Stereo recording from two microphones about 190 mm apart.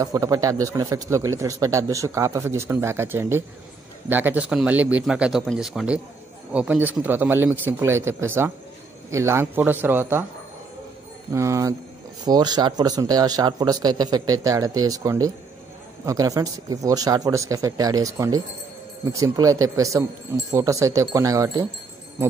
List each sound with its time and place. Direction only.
0.0 s a man's voice: 15° right (ahead or behind)
11.3 s a man's voice: 15° right (ahead or behind)